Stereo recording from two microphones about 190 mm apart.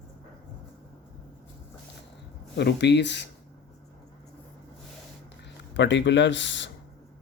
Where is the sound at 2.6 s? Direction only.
60° left (ahead or behind).